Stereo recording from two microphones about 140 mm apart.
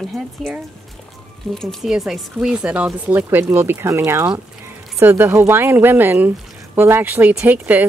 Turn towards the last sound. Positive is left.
turn(degrees=-10)  # may be behind; listen again after turning